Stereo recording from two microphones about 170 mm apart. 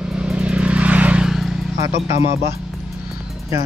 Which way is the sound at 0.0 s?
5° right (ahead or behind).